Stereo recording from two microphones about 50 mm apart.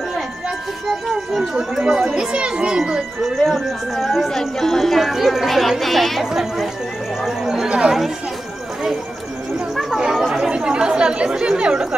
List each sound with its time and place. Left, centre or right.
1.5 s a child's voice: centre
3.4 s a child's voice: centre
10.3 s speech: centre